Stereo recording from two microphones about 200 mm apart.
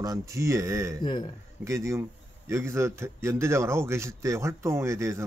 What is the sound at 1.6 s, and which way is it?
Speech, 15° right (ahead or behind).